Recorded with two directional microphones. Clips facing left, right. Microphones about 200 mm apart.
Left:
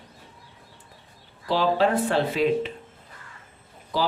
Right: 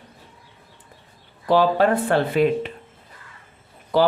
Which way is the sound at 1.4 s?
55° right (ahead or behind).